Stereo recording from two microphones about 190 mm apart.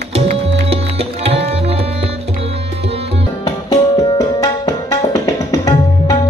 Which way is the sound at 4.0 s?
20° left (ahead or behind).